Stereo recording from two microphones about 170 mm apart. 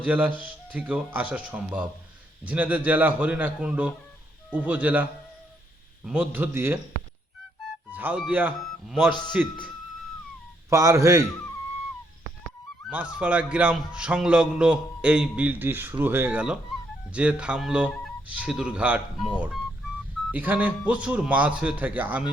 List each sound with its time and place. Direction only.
0.0 s a man's voice: 10° right (ahead or behind)
6.1 s a man's voice: 10° right (ahead or behind)
7.9 s music: 10° right (ahead or behind)
8.3 s a man's voice: 10° right (ahead or behind)
10.7 s a man's voice: 20° right (ahead or behind)
12.9 s a man's voice: 5° right (ahead or behind)
20.3 s a man's voice: 10° right (ahead or behind)